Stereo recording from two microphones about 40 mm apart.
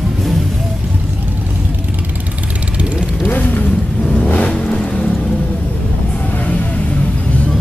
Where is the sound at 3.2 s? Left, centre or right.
Left.